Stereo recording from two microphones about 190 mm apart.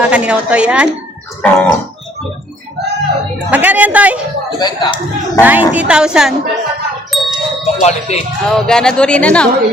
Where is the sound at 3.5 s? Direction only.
5° right (ahead or behind).